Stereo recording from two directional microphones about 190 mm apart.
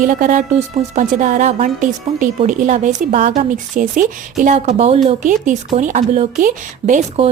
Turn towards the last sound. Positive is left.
turn(degrees=-35)  # may be behind; listen again after turning